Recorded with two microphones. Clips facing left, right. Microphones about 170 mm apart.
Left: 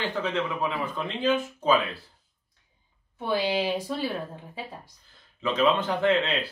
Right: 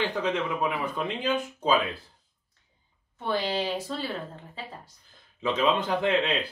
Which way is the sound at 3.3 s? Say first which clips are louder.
Left 2 dB; 10° left (ahead or behind).